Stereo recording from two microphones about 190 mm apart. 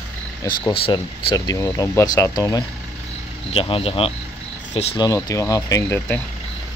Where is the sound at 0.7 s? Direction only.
25° left (ahead or behind).